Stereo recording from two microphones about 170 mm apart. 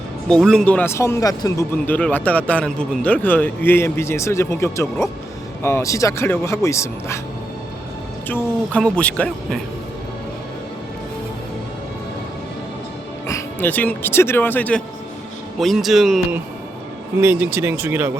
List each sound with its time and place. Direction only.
0.3 s speech: 5° left (ahead or behind)
8.3 s speech: 10° left (ahead or behind)
13.2 s speech: 15° left (ahead or behind); by 18.1 s 10° right (ahead or behind)